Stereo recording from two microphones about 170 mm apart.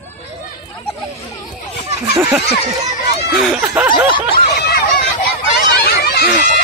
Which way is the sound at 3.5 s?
10° right (ahead or behind).